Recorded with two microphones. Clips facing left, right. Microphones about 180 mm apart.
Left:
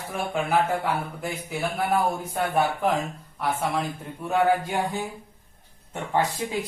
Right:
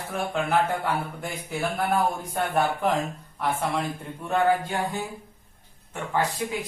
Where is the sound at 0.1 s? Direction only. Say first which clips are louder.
Even; 10° left (ahead or behind).